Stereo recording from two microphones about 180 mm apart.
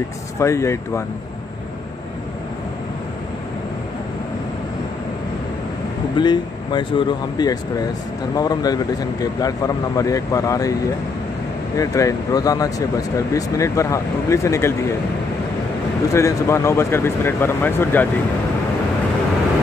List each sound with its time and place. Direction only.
0.4 s speech: 15° left (ahead or behind)
6.1 s speech: 25° left (ahead or behind)
16.1 s speech: 15° left (ahead or behind)